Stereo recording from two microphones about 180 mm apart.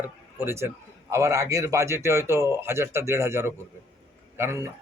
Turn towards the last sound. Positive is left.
turn(degrees=-15)  # may be behind; listen again after turning